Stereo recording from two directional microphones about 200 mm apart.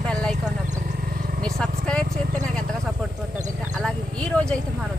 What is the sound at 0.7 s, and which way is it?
Wild animals, 40° right (ahead or behind).